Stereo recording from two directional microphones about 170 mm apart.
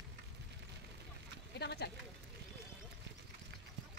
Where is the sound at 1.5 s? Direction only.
75° left (ahead or behind).